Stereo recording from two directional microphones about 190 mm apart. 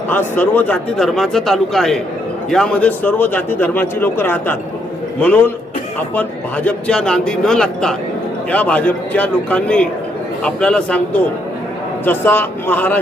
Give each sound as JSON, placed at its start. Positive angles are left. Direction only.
{"t": 0.1, "sound": "speech", "side_deg": 10}
{"t": 6.7, "sound": "speech", "side_deg": 5}